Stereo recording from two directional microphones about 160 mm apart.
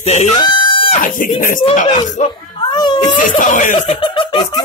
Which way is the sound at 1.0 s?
60° left (ahead or behind).